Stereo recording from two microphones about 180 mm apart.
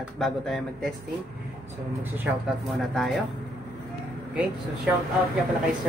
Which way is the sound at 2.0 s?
10° right (ahead or behind).